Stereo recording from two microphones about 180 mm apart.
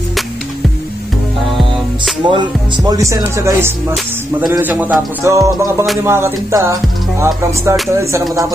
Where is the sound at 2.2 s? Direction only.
25° right (ahead or behind).